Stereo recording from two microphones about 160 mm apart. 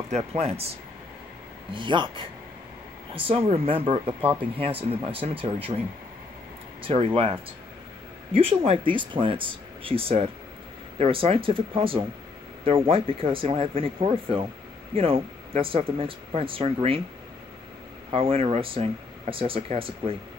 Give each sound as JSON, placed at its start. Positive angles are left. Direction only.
{"t": 0.1, "sound": "speech", "side_deg": -40}
{"t": 1.7, "sound": "speech", "side_deg": -30}
{"t": 4.2, "sound": "speech", "side_deg": -10}
{"t": 4.6, "sound": "speech", "side_deg": -35}
{"t": 6.8, "sound": "speech", "side_deg": -35}
{"t": 8.3, "sound": "speech", "side_deg": -35}
{"t": 18.1, "sound": "speech", "side_deg": -35}